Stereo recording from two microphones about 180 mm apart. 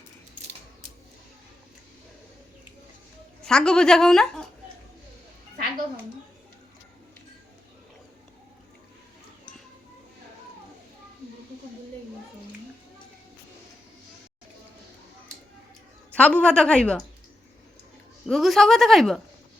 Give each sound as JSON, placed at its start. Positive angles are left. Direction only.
{"t": 3.4, "sound": "a woman's voice", "side_deg": 5}
{"t": 16.1, "sound": "a woman's voice", "side_deg": 5}
{"t": 18.3, "sound": "a woman's voice", "side_deg": 0}